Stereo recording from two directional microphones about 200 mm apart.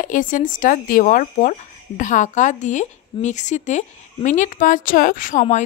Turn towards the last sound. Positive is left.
turn(degrees=40)  # may be behind; listen again after turning